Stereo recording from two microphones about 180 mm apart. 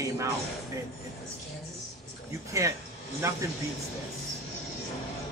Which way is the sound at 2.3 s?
15° right (ahead or behind).